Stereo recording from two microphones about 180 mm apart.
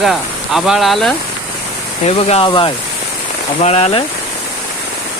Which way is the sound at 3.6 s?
35° left (ahead or behind).